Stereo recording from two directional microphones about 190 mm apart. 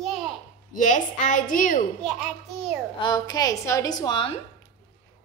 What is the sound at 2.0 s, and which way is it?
Speech, centre (ahead or behind).